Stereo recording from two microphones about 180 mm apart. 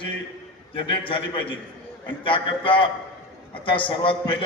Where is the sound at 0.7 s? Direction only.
30° left (ahead or behind).